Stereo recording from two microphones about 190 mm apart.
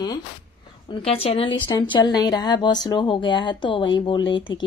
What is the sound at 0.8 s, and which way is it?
A woman's voice, 30° left (ahead or behind).